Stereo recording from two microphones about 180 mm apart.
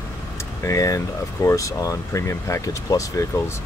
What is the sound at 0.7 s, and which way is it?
Speech, 15° left (ahead or behind).